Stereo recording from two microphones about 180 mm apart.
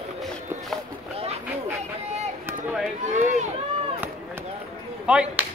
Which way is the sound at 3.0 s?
40° right (ahead or behind).